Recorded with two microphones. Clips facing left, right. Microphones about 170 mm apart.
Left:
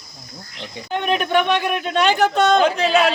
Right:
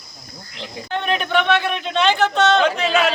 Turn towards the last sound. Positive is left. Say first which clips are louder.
# left 2 dB
turn(degrees=35)  # may be behind; listen again after turning